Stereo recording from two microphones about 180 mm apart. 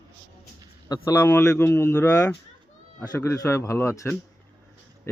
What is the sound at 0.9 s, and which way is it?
Speech, 15° left (ahead or behind).